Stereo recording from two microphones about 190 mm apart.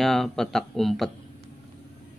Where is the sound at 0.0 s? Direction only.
Centre (ahead or behind).